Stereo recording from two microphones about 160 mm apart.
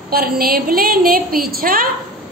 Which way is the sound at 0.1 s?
70° right (ahead or behind).